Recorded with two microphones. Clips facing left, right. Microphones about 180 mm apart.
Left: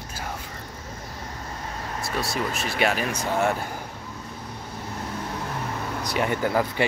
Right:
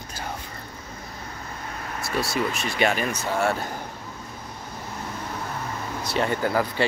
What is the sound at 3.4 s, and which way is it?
Speech, 15° left (ahead or behind).